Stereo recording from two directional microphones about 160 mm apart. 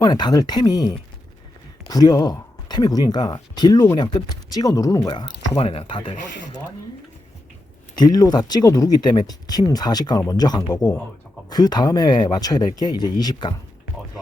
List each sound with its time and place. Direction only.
0.0 s speech: 25° left (ahead or behind)
7.9 s speech: 25° left (ahead or behind)